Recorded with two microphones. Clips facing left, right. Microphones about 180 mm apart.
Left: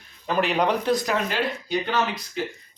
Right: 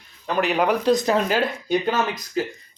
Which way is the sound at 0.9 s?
20° right (ahead or behind).